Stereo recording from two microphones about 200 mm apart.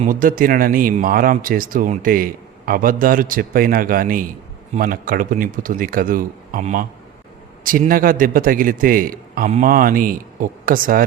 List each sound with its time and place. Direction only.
0.0 s speech: 45° right (ahead or behind)